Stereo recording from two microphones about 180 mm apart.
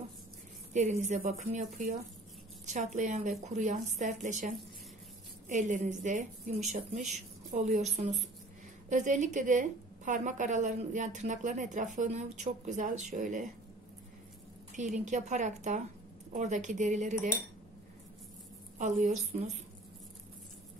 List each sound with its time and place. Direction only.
0.7 s a woman's voice: 40° right (ahead or behind)
5.5 s a woman's voice: 40° right (ahead or behind)
14.8 s a woman's voice: 40° right (ahead or behind)
18.8 s a woman's voice: 40° right (ahead or behind)